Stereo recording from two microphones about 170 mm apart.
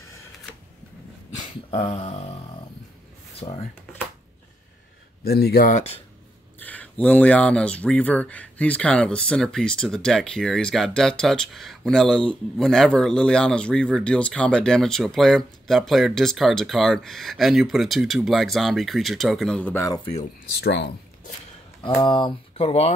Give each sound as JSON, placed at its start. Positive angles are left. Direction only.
{"t": 1.7, "sound": "speech", "side_deg": 35}
{"t": 3.3, "sound": "speech", "side_deg": 35}
{"t": 5.2, "sound": "speech", "side_deg": 65}
{"t": 6.6, "sound": "speech", "side_deg": 10}
{"t": 20.5, "sound": "speech", "side_deg": 80}
{"t": 21.8, "sound": "speech", "side_deg": 30}